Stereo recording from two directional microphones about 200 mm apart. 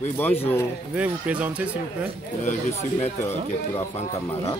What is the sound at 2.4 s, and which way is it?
Speech, 35° left (ahead or behind).